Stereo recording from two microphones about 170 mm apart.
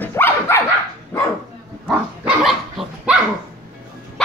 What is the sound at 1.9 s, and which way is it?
Dog, 5° right (ahead or behind).